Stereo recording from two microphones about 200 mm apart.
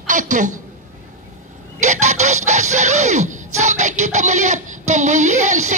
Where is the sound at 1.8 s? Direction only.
35° right (ahead or behind).